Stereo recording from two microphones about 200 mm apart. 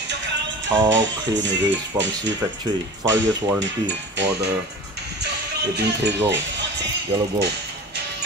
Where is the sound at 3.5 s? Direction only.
65° right (ahead or behind).